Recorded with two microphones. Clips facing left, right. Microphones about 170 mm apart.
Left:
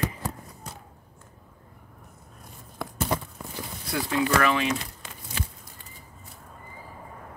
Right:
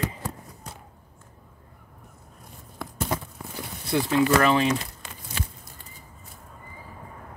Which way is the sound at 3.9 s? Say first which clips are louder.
Right 4 dB; 30° right (ahead or behind).